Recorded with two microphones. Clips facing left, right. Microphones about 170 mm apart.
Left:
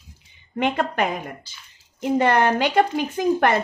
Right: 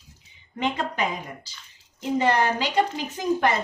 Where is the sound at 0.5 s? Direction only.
55° left (ahead or behind).